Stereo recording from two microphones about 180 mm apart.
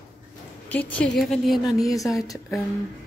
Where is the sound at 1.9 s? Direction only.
20° left (ahead or behind).